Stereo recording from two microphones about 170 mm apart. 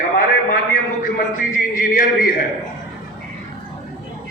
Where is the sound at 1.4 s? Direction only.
55° left (ahead or behind).